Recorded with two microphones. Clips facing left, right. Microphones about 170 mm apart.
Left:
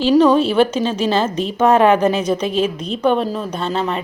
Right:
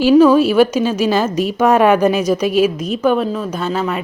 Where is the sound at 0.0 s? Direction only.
5° right (ahead or behind).